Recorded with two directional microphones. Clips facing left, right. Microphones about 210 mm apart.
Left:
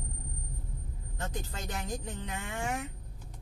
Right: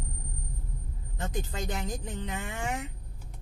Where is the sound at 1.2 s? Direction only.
20° right (ahead or behind).